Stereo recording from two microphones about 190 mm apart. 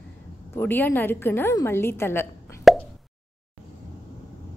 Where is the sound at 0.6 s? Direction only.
10° left (ahead or behind).